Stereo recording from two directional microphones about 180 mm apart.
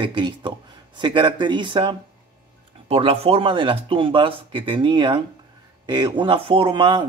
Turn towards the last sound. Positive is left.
turn(degrees=-30)  # may be behind; listen again after turning